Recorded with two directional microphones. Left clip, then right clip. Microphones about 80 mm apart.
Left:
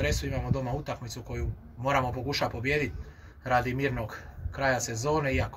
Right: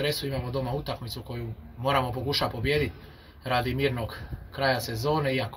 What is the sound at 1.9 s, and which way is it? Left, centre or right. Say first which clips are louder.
Speech: right 2 dB; centre.